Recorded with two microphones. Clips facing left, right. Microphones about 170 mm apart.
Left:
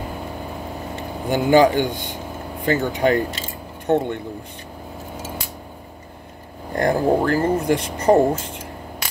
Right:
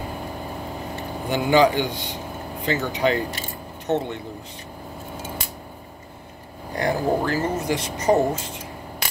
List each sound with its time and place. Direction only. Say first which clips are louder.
1.3 s a man's voice: left 3 dB; 45° left (ahead or behind)
6.7 s speech: left 4 dB; 50° left (ahead or behind)